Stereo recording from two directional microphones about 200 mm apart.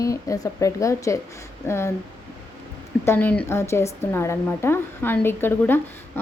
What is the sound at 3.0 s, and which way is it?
Speech, 10° left (ahead or behind).